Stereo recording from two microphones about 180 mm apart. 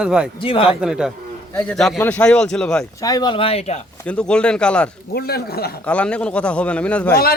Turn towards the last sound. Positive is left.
turn(degrees=10)  # may be behind; listen again after turning